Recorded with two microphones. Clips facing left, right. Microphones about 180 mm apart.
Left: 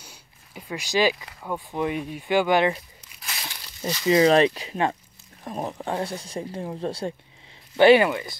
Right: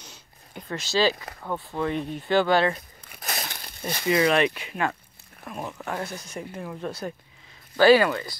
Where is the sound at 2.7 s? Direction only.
50° right (ahead or behind).